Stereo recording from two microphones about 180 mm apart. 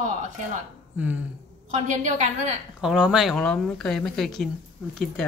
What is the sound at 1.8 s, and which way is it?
Speech, 40° right (ahead or behind).